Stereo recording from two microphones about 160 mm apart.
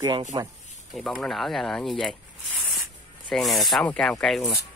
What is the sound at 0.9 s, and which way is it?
Speech, centre (ahead or behind).